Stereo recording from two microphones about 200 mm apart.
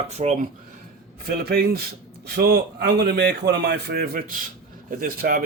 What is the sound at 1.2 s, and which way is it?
A man's voice, 50° right (ahead or behind).